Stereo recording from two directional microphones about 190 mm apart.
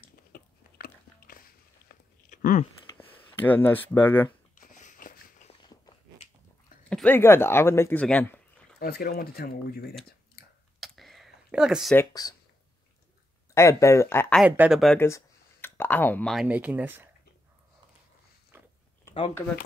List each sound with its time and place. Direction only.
0.3 s biting: 50° left (ahead or behind)
2.8 s a sound: 30° left (ahead or behind)
3.3 s speech: 10° left (ahead or behind)
4.6 s a sound: 40° left (ahead or behind)
5.5 s a sound: 25° left (ahead or behind)
6.9 s speech: 5° left (ahead or behind)
8.7 s speech: 55° left (ahead or behind)
10.8 s a sound: centre (ahead or behind)
11.9 s speech: 15° left (ahead or behind)
13.6 s speech: 15° left (ahead or behind)
14.3 s speech: 5° right (ahead or behind)
15.0 s speech: 15° left (ahead or behind); by 17.1 s 10° right (ahead or behind)
18.5 s chewing: 10° right (ahead or behind)
19.3 s speech: 10° left (ahead or behind)